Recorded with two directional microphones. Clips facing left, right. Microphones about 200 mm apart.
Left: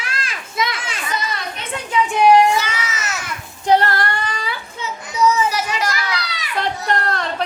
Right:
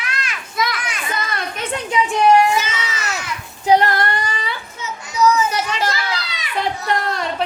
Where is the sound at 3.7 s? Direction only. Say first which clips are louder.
Right 1 dB; 15° right (ahead or behind).